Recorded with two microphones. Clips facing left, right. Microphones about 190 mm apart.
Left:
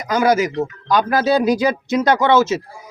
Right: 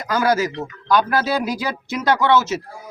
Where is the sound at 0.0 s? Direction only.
20° left (ahead or behind).